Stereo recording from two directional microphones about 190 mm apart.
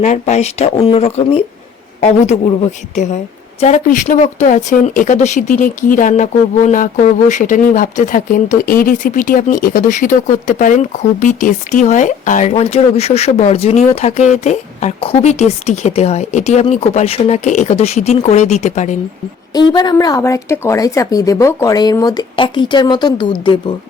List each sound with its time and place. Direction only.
0.0 s speech: 40° left (ahead or behind)
2.9 s speech: 35° left (ahead or behind)
19.5 s speech: 20° left (ahead or behind)